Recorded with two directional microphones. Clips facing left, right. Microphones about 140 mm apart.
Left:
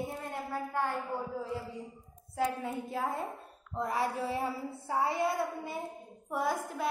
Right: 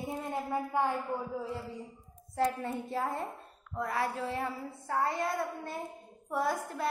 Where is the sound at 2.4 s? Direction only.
5° left (ahead or behind).